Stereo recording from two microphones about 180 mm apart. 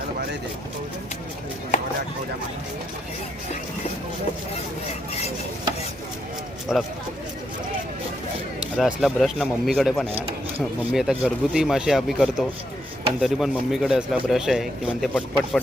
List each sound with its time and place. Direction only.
6.7 s a man's voice: centre (ahead or behind)
8.6 s a man's voice: 5° right (ahead or behind)
10.1 s speech: 35° right (ahead or behind)
10.6 s a man's voice: centre (ahead or behind)